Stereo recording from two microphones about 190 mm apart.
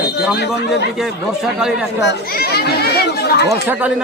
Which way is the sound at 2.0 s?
60° left (ahead or behind).